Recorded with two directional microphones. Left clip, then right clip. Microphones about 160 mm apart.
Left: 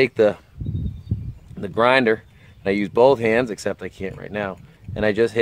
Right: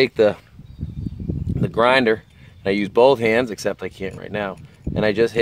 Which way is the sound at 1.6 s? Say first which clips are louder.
Right 1 dB; 15° right (ahead or behind).